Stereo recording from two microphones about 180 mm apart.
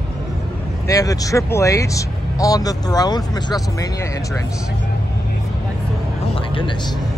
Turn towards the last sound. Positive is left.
turn(degrees=30)  # may be behind; listen again after turning